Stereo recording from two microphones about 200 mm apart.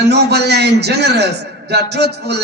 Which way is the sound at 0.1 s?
55° right (ahead or behind).